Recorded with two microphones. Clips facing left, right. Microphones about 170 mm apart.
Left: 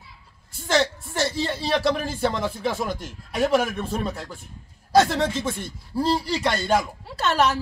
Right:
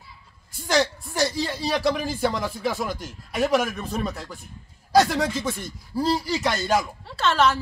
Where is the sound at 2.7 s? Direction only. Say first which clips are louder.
Left 1 dB; 5° right (ahead or behind).